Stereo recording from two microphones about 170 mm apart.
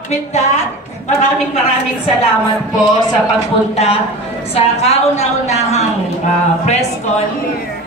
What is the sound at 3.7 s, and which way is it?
A woman's voice, 35° left (ahead or behind).